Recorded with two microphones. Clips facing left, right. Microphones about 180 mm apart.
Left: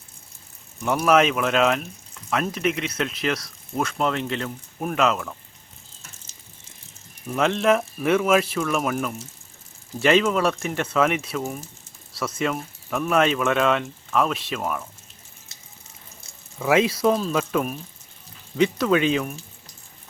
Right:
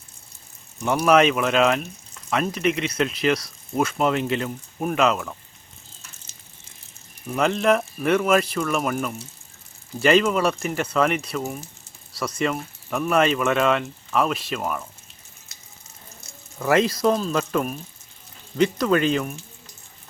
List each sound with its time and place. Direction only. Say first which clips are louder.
0.9 s speech: right 1 dB; centre (ahead or behind)
7.3 s speech: even; centre (ahead or behind)
16.2 s water: right 3 dB; 30° left (ahead or behind)
16.6 s speech: even; 5° left (ahead or behind)